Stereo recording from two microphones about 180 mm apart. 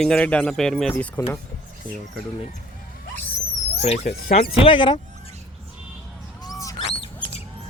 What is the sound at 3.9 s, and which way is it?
Speech, 40° left (ahead or behind).